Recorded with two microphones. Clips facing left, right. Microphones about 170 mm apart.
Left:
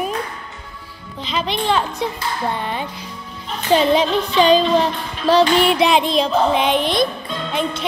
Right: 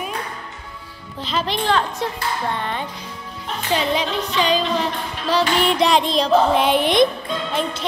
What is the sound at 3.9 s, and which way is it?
Music, 30° left (ahead or behind).